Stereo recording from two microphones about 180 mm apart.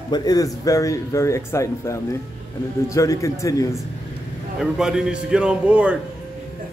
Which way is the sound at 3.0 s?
15° left (ahead or behind).